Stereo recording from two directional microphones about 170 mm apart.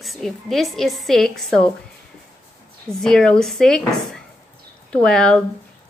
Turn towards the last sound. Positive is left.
turn(degrees=5)  # may be behind; listen again after turning